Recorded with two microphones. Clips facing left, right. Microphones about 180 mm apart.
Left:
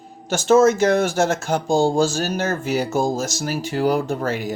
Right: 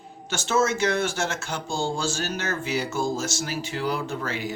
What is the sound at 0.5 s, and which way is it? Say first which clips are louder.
Speech: left 7 dB; 40° left (ahead or behind).